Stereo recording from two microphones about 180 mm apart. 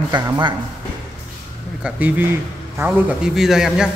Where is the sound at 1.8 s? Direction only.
10° right (ahead or behind).